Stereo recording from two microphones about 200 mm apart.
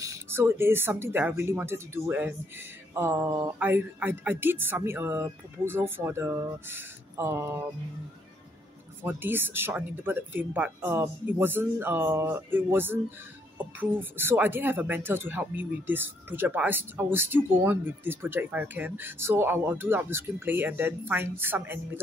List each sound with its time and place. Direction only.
0.0 s speech: 15° right (ahead or behind)
9.0 s speech: 10° right (ahead or behind)